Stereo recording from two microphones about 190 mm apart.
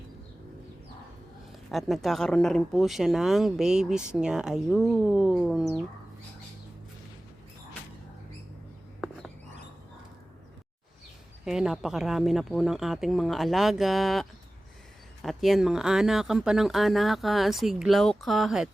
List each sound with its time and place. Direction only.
1.7 s speech: centre (ahead or behind)
11.4 s speech: 5° right (ahead or behind)